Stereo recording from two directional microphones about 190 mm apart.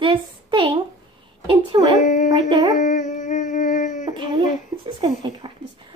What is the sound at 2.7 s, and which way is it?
Dog, 40° left (ahead or behind).